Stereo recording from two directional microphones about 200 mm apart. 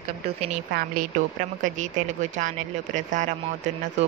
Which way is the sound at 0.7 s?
45° right (ahead or behind).